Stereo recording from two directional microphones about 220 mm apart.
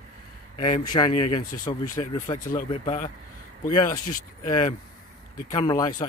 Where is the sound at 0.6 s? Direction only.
25° left (ahead or behind).